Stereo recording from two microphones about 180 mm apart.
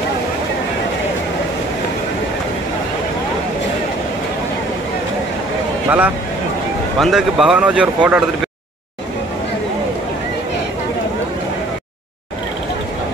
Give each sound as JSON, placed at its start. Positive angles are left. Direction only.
{"t": 5.9, "sound": "speech", "side_deg": -10}